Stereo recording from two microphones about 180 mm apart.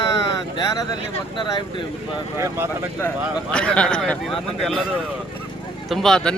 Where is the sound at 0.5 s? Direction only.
25° left (ahead or behind).